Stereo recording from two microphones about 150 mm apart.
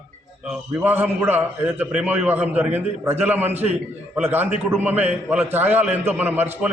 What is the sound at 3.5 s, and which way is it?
Speech, 50° right (ahead or behind).